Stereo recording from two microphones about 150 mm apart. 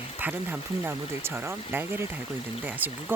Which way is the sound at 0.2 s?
10° right (ahead or behind).